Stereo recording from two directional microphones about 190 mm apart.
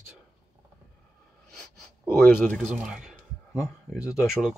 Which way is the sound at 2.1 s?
Centre (ahead or behind).